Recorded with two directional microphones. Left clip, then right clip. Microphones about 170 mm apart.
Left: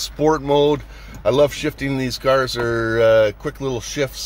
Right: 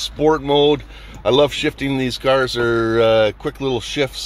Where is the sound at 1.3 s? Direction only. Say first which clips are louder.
Right 1 dB; 15° right (ahead or behind).